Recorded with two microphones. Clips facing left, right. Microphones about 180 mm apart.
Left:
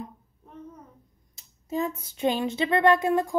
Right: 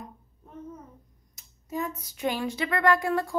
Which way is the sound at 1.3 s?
25° left (ahead or behind).